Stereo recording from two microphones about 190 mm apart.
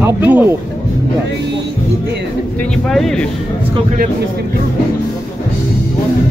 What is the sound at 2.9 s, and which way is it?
Speech, centre (ahead or behind).